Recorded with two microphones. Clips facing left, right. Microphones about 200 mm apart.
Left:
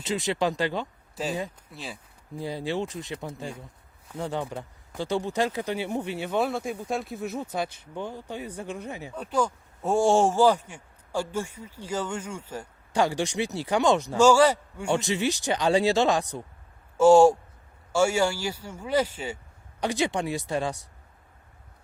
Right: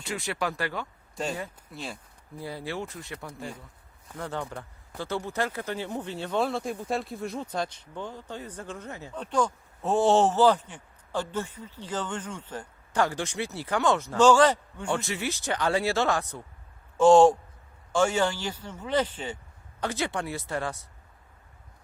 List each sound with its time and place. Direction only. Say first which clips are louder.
0.0 s speech: left 5 dB; 20° left (ahead or behind)
1.1 s speech: left 2 dB; 5° left (ahead or behind)
2.4 s speech: left 5 dB; 20° left (ahead or behind)
3.3 s speech: left 2 dB; centre (ahead or behind)
4.2 s speech: left 3 dB; 15° left (ahead or behind)